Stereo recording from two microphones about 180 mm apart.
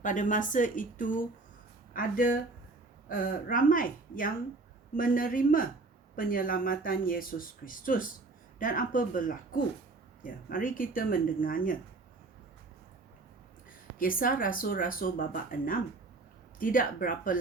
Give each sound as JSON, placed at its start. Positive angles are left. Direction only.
{"t": 0.0, "sound": "speech", "side_deg": 45}
{"t": 14.0, "sound": "speech", "side_deg": 50}